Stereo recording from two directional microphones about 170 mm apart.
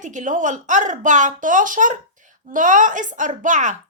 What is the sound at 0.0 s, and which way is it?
A woman's voice, 45° right (ahead or behind).